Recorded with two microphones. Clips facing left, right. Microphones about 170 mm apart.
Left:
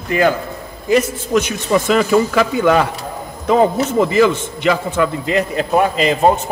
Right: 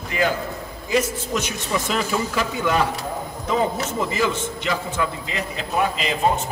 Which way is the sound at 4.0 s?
70° left (ahead or behind).